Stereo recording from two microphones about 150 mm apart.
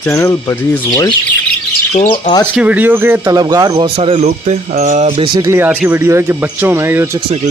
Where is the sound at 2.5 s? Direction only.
10° right (ahead or behind).